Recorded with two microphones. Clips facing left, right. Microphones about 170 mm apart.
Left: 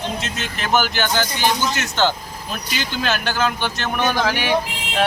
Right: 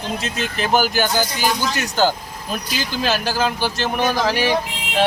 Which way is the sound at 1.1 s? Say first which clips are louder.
Right 1 dB; 10° right (ahead or behind).